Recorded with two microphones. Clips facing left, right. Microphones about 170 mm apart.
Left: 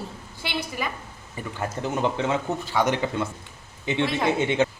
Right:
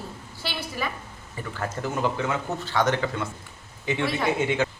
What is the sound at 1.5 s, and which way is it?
Speech, 20° left (ahead or behind).